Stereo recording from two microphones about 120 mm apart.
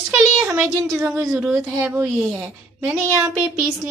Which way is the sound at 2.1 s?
Centre (ahead or behind).